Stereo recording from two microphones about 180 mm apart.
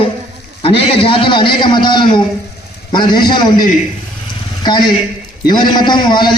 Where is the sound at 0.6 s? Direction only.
30° left (ahead or behind).